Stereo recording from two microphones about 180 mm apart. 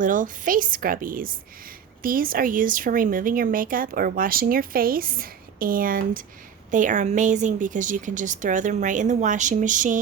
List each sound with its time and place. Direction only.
0.0 s speech: 50° right (ahead or behind)